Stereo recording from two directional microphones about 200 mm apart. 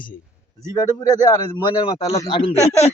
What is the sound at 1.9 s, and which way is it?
Speech, 20° left (ahead or behind).